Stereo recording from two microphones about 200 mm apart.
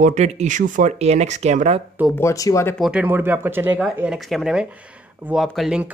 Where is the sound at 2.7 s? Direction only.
5° right (ahead or behind).